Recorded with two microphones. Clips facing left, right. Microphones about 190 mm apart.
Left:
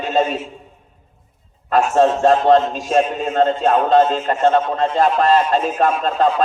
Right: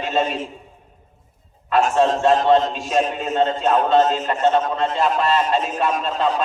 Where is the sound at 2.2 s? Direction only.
40° left (ahead or behind).